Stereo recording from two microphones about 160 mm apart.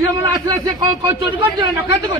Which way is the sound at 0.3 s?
25° right (ahead or behind).